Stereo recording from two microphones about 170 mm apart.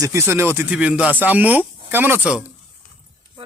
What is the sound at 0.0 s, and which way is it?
Speech, 15° right (ahead or behind).